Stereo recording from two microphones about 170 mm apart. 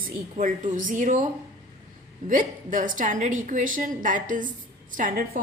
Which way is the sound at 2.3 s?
50° right (ahead or behind).